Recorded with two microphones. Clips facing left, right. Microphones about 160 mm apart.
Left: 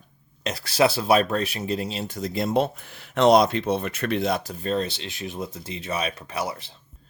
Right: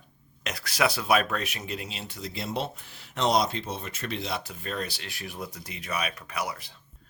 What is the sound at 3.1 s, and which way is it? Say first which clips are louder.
Speech: left 8 dB; 60° left (ahead or behind).